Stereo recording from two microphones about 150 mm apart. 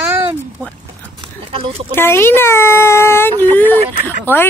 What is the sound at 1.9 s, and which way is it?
Speech, 15° left (ahead or behind).